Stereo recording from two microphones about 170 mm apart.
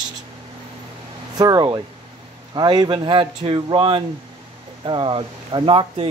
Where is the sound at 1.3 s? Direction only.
20° right (ahead or behind).